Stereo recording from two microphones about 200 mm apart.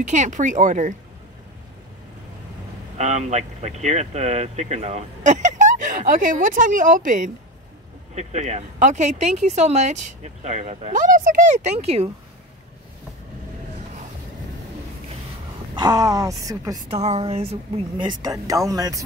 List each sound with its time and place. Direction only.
0.0 s speech: 35° right (ahead or behind)
3.0 s speech: 35° right (ahead or behind)
15.8 s speech: 20° right (ahead or behind)
17.0 s speech: 30° right (ahead or behind)